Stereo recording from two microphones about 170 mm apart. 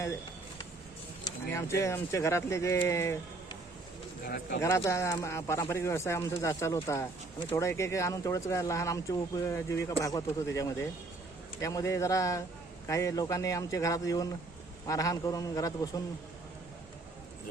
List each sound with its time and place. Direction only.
1.5 s speech: 15° left (ahead or behind)
4.2 s speech: 70° left (ahead or behind)
4.6 s speech: 20° left (ahead or behind)